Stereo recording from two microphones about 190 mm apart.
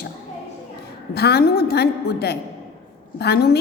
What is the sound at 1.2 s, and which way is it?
A woman's voice, 60° left (ahead or behind).